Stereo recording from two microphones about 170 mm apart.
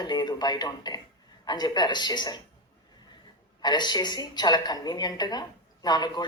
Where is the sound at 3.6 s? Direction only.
25° left (ahead or behind).